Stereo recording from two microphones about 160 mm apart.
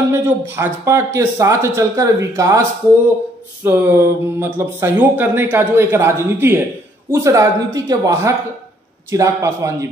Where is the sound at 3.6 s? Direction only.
10° right (ahead or behind).